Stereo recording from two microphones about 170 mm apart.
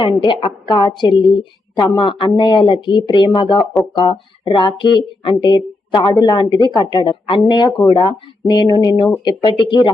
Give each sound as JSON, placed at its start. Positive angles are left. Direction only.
{"t": 0.0, "sound": "speech", "side_deg": 30}